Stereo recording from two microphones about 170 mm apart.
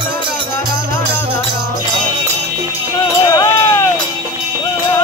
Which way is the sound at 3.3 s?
15° left (ahead or behind).